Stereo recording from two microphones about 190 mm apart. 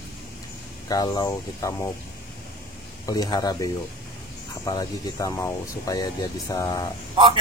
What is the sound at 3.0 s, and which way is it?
Speech, 20° left (ahead or behind).